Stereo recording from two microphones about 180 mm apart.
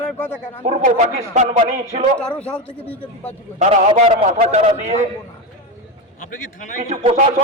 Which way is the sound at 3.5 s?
40° right (ahead or behind).